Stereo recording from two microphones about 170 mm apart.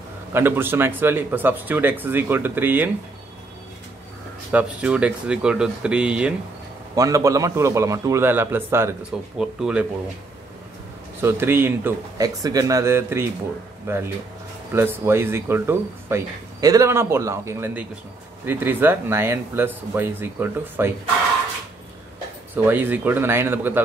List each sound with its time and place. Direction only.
0.3 s speech: 10° right (ahead or behind)
4.5 s speech: 10° right (ahead or behind)
7.0 s speech: 20° right (ahead or behind)
11.1 s speech: 15° right (ahead or behind)
22.6 s speech: 10° right (ahead or behind)